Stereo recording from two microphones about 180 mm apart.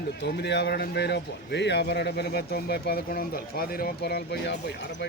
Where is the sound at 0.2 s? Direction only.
70° left (ahead or behind).